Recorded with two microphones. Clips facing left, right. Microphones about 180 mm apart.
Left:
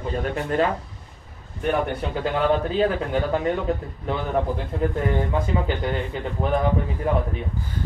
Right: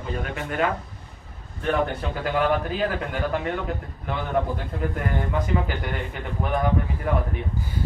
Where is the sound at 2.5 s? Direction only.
25° left (ahead or behind).